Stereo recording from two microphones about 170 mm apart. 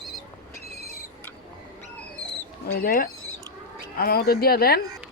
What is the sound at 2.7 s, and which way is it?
Speech, 60° left (ahead or behind).